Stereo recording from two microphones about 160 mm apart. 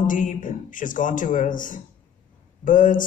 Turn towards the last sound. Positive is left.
turn(degrees=55)  # may be behind; listen again after turning